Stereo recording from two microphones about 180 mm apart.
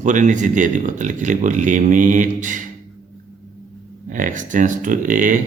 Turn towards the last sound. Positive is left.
turn(degrees=-45)  # may be behind; listen again after turning